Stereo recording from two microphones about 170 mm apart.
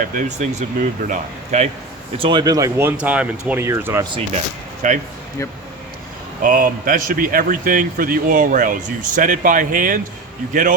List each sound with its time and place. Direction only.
0.0 s speech: 55° right (ahead or behind)
2.1 s speech: 30° right (ahead or behind)
4.8 s speech: 50° right (ahead or behind)
6.4 s speech: 55° right (ahead or behind)